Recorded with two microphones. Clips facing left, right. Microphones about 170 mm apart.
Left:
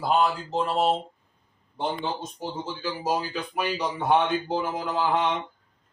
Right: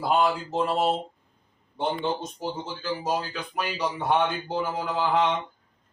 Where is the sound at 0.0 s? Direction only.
5° right (ahead or behind).